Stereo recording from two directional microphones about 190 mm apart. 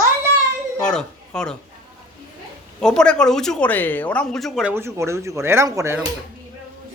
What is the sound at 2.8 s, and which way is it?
Speech, 5° left (ahead or behind).